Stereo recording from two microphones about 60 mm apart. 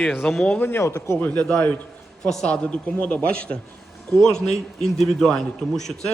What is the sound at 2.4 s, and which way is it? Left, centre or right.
A man's voice, left.